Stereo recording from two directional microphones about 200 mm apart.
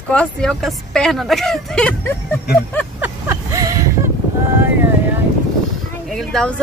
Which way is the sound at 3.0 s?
15° right (ahead or behind).